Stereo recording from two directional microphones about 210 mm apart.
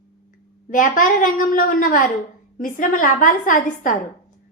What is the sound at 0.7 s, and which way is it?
A woman's voice, 40° left (ahead or behind).